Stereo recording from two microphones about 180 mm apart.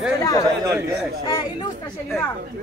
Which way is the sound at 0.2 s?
20° left (ahead or behind).